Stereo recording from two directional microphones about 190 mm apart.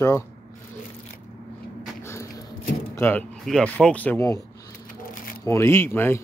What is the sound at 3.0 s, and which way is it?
Speech, 10° left (ahead or behind).